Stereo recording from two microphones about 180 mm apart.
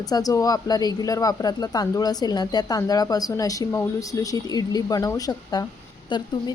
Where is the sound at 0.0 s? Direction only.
20° left (ahead or behind).